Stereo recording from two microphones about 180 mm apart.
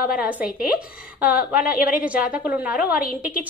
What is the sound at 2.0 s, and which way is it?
Speech, 5° right (ahead or behind).